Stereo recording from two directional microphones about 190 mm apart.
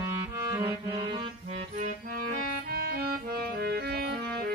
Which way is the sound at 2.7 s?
55° right (ahead or behind).